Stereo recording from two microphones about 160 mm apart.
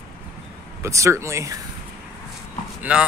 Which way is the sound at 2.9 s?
5° right (ahead or behind).